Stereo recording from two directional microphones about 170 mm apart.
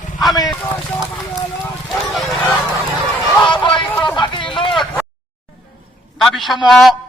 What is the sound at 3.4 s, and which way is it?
Music, 30° left (ahead or behind).